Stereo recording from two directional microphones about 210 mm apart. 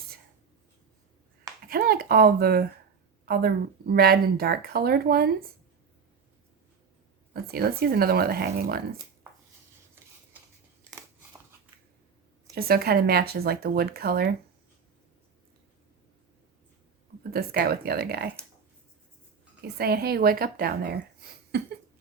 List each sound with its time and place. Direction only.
1.6 s speech: 45° right (ahead or behind)
7.5 s speech: 45° right (ahead or behind)
12.5 s speech: 45° right (ahead or behind)
17.3 s speech: 45° right (ahead or behind)
19.6 s speech: 45° right (ahead or behind)